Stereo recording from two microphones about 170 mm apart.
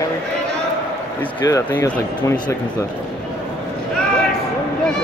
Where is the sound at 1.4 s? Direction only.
20° left (ahead or behind).